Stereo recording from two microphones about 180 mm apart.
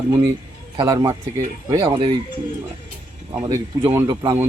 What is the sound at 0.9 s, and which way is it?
Speech, 20° right (ahead or behind).